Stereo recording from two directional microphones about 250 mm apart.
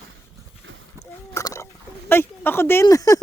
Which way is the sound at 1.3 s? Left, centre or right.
Centre.